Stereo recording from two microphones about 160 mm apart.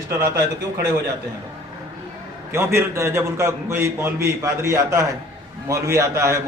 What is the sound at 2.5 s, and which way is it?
A man's voice, 15° right (ahead or behind).